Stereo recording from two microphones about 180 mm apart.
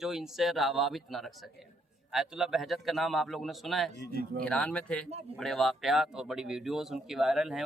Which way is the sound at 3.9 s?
65° left (ahead or behind).